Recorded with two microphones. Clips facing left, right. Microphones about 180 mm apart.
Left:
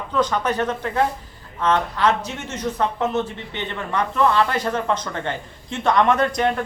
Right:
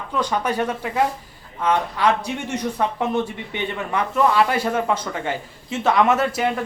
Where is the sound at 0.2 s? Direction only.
10° right (ahead or behind).